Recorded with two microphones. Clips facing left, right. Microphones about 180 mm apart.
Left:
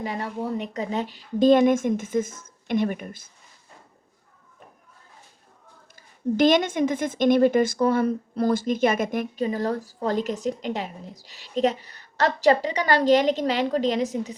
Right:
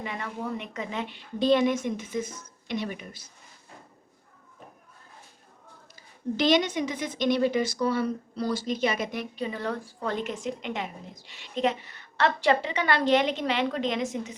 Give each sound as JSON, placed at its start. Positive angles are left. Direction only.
{"t": 0.0, "sound": "a woman's voice", "side_deg": 40}
{"t": 6.0, "sound": "a woman's voice", "side_deg": 50}